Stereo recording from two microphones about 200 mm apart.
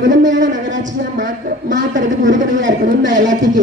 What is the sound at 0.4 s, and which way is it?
Speech, 40° right (ahead or behind).